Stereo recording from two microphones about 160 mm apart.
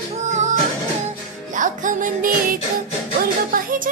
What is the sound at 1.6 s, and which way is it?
Music, 55° right (ahead or behind).